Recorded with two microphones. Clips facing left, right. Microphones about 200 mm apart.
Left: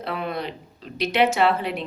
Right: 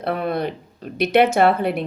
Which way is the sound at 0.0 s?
55° right (ahead or behind).